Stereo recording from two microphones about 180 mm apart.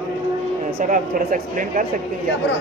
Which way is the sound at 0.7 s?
50° right (ahead or behind).